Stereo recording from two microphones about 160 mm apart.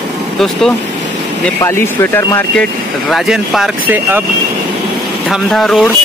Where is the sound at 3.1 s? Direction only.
Centre (ahead or behind).